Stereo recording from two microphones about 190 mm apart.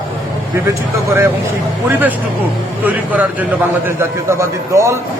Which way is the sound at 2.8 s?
10° right (ahead or behind).